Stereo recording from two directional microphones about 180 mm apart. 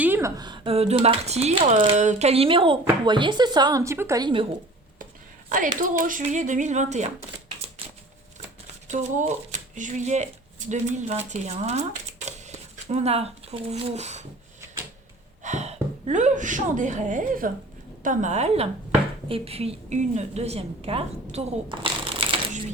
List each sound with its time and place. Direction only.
0.0 s a woman's voice: 15° right (ahead or behind)
5.5 s speech: 50° right (ahead or behind)
7.8 s a sound: 30° right (ahead or behind)
8.9 s speech: 40° right (ahead or behind)
15.4 s a woman's voice: 40° right (ahead or behind)